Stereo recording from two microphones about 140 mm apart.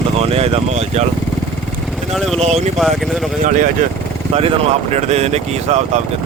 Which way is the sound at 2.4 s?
50° right (ahead or behind).